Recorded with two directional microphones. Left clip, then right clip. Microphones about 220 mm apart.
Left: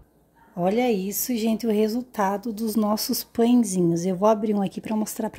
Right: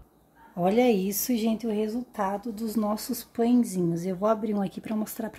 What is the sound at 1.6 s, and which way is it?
Speech, 35° left (ahead or behind).